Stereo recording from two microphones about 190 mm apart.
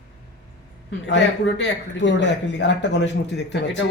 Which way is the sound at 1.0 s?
65° left (ahead or behind).